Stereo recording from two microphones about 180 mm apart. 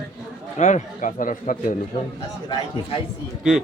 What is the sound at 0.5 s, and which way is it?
Speech, 45° left (ahead or behind).